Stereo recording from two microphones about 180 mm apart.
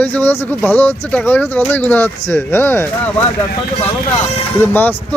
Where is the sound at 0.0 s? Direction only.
10° left (ahead or behind).